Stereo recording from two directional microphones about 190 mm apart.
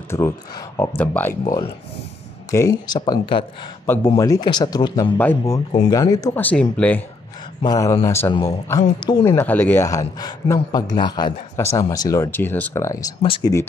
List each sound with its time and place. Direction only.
0.1 s a woman's voice: 15° left (ahead or behind)
1.4 s speech: 25° left (ahead or behind)
3.9 s a woman's voice: 10° left (ahead or behind)
5.1 s a woman's voice: 10° left (ahead or behind)
7.6 s a woman's voice: 20° left (ahead or behind)